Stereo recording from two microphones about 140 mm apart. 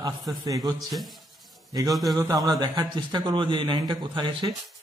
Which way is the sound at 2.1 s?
25° right (ahead or behind).